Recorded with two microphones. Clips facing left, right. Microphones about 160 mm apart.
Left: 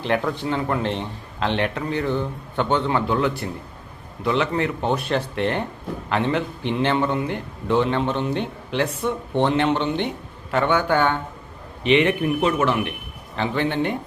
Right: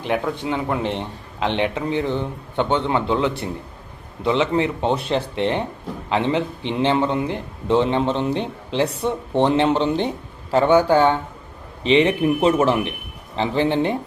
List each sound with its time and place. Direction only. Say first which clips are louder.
0.0 s a man's voice: even; 10° right (ahead or behind); by 13.9 s 30° right (ahead or behind)